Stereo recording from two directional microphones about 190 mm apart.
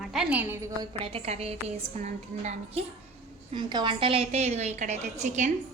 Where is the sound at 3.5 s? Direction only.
25° right (ahead or behind).